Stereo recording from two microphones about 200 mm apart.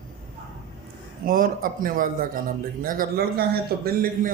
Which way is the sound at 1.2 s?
45° right (ahead or behind).